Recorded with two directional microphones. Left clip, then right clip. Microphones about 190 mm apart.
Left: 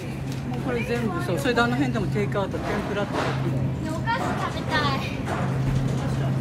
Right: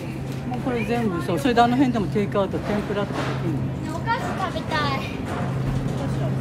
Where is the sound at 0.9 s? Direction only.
50° right (ahead or behind).